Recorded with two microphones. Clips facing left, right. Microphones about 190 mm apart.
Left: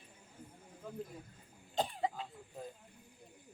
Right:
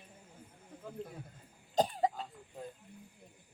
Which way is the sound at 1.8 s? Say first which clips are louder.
Right 5 dB; 40° right (ahead or behind).